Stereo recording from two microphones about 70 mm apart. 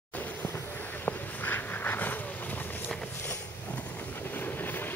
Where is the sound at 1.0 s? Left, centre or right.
Left.